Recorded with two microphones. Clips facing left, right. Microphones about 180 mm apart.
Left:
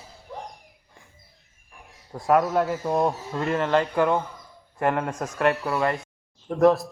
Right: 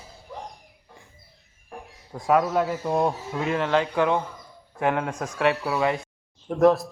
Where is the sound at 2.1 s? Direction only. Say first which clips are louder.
Left 1 dB; centre (ahead or behind).